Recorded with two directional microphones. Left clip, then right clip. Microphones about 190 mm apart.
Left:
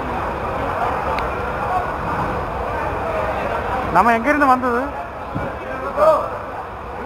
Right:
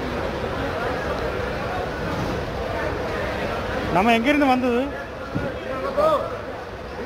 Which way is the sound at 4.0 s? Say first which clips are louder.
Left 4 dB; 90° right.